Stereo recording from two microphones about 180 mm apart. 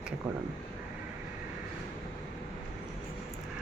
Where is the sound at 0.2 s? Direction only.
15° right (ahead or behind).